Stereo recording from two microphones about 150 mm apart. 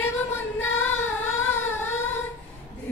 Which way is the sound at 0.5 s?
15° left (ahead or behind).